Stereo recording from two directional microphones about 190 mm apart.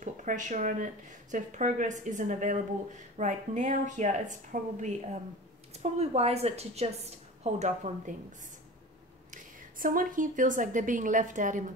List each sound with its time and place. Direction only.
0.0 s a woman's voice: 40° right (ahead or behind)